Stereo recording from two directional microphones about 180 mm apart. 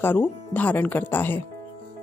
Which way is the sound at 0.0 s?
10° left (ahead or behind).